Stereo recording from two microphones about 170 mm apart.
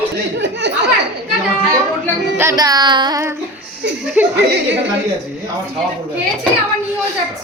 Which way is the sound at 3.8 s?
90° right.